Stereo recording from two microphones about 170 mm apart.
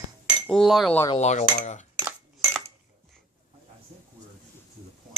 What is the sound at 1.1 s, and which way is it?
Speech, 40° left (ahead or behind).